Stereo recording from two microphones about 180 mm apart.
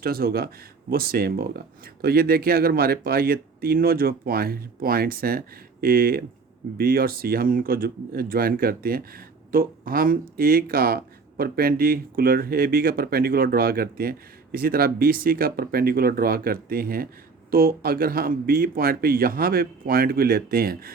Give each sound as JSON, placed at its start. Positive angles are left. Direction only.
{"t": 0.0, "sound": "speech", "side_deg": -55}